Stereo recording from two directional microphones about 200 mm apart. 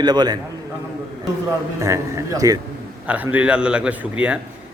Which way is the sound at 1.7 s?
15° right (ahead or behind).